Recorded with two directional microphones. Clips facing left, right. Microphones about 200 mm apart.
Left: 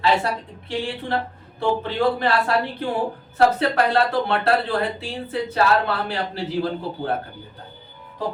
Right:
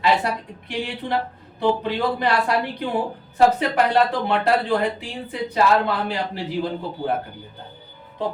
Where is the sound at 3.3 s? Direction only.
15° right (ahead or behind).